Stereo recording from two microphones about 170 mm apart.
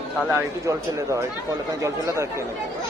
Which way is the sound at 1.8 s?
15° right (ahead or behind).